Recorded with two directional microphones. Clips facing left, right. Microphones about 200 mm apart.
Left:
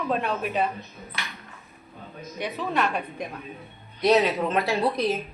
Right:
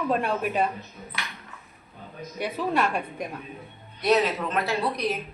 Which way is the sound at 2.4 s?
10° right (ahead or behind).